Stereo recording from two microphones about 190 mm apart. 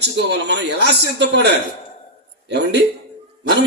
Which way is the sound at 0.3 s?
65° right (ahead or behind).